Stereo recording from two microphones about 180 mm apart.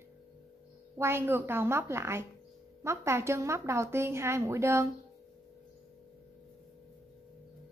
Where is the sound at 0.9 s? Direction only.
15° right (ahead or behind).